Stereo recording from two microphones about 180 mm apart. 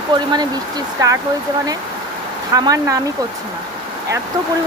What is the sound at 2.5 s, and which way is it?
Speech, 20° right (ahead or behind).